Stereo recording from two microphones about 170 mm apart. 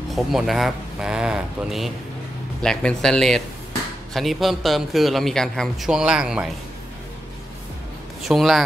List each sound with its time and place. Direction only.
0.1 s speech: centre (ahead or behind)
8.2 s speech: centre (ahead or behind)